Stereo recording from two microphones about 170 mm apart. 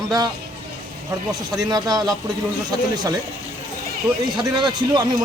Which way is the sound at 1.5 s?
20° right (ahead or behind).